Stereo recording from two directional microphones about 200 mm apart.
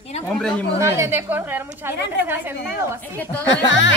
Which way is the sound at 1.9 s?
60° left (ahead or behind).